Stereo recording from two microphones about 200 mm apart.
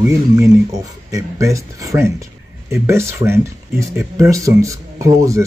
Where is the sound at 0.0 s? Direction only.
15° right (ahead or behind).